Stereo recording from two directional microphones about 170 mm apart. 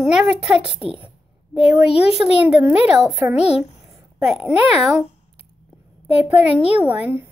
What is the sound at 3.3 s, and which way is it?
Speech, 40° left (ahead or behind).